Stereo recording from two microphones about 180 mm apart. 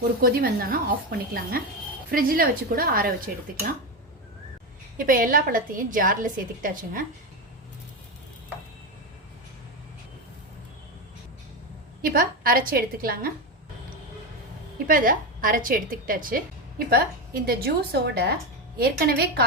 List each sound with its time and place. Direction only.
0.2 s a woman's voice: 55° right (ahead or behind)
4.9 s a woman's voice: 50° right (ahead or behind)
12.0 s a woman's voice: 55° right (ahead or behind)
14.8 s a woman's voice: 50° right (ahead or behind)